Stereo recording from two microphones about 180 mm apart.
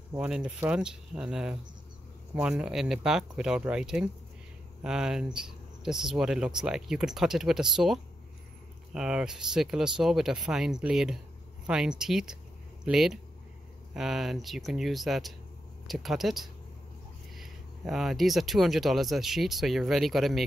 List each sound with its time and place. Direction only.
0.1 s speech: 5° right (ahead or behind)